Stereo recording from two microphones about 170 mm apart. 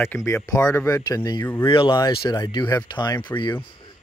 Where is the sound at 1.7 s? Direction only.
30° left (ahead or behind).